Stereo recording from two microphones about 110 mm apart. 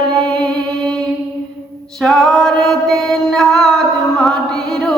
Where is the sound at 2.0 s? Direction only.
5° left (ahead or behind).